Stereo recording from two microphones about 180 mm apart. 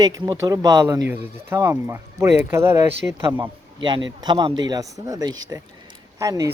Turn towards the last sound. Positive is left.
turn(degrees=-20)  # may be behind; listen again after turning